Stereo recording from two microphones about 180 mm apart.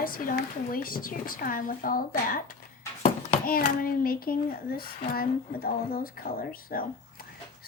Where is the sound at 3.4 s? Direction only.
55° left (ahead or behind).